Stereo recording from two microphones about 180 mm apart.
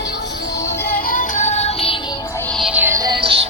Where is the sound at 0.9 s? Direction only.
50° left (ahead or behind).